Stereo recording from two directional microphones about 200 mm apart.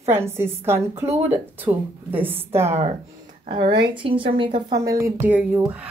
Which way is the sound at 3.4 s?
30° right (ahead or behind).